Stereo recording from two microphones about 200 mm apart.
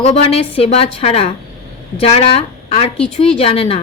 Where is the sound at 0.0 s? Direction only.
30° left (ahead or behind).